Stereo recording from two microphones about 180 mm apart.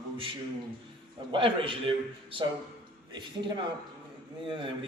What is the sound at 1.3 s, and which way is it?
Speech, 30° right (ahead or behind).